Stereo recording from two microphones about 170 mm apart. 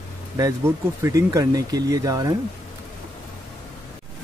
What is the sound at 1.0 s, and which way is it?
Speech, 20° right (ahead or behind).